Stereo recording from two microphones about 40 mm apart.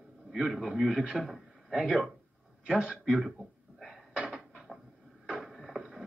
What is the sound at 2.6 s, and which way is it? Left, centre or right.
Speech, right.